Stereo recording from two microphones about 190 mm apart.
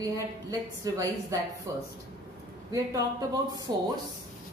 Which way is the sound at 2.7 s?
20° right (ahead or behind).